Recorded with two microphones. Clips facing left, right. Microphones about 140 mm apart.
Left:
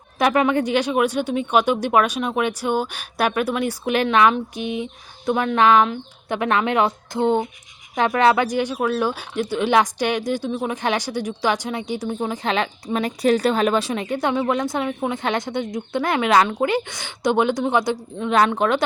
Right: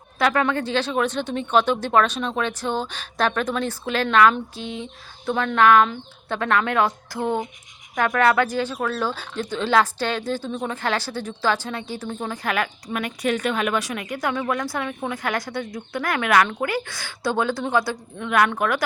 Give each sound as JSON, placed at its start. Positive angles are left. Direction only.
{"t": 0.2, "sound": "speech", "side_deg": 15}